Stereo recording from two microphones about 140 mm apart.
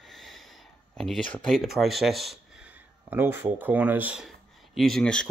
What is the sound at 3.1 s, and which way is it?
Speech, 15° right (ahead or behind).